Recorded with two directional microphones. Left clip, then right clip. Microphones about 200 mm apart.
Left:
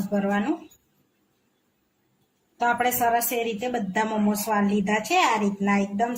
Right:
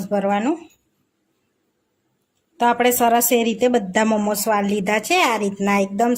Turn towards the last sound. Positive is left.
turn(degrees=-55)  # may be behind; listen again after turning